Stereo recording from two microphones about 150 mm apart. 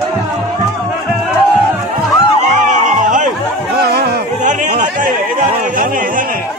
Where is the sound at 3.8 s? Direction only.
90° right.